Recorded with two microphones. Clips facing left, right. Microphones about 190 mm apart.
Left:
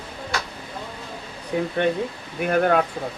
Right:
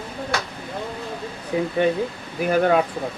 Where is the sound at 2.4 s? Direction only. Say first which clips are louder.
Right 1 dB; centre (ahead or behind).